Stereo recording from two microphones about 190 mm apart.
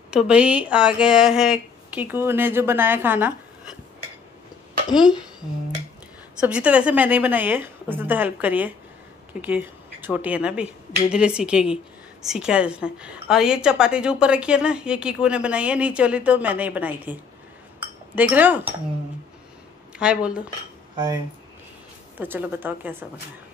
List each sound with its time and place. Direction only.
0.1 s speech: 5° right (ahead or behind)
4.9 s a woman's voice: centre (ahead or behind)
6.4 s a woman's voice: 5° right (ahead or behind)
20.0 s a woman's voice: 5° right (ahead or behind)
20.9 s speech: 20° right (ahead or behind)
22.2 s speech: 10° right (ahead or behind)